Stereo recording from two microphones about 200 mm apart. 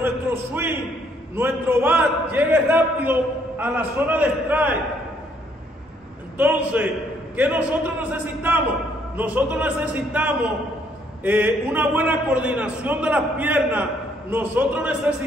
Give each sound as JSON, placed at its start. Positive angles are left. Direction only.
{"t": 0.0, "sound": "a sound", "side_deg": -10}
{"t": 1.3, "sound": "a man's voice", "side_deg": -10}
{"t": 6.3, "sound": "a man's voice", "side_deg": -5}